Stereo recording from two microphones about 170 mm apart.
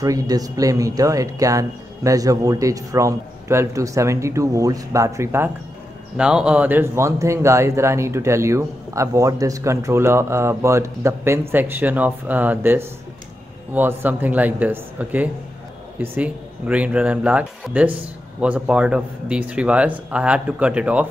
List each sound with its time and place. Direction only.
0.0 s a man's voice: 20° right (ahead or behind)